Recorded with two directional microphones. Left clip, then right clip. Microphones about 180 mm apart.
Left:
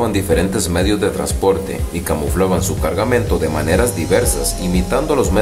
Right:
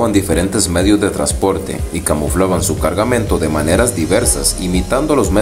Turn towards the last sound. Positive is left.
turn(degrees=-20)  # may be behind; listen again after turning